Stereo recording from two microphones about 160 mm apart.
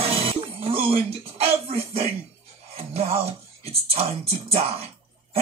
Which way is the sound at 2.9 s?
35° right (ahead or behind).